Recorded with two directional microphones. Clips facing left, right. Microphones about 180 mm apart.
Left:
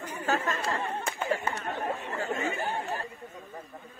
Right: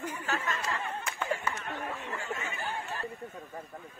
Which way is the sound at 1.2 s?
25° left (ahead or behind).